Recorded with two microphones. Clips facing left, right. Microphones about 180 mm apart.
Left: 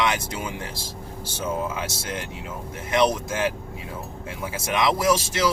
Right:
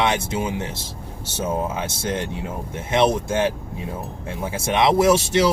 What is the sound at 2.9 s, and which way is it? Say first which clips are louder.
Speech: right 3 dB; 25° right (ahead or behind).